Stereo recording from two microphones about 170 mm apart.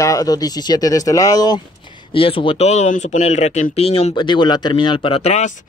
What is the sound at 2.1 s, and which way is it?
Speech, 30° left (ahead or behind).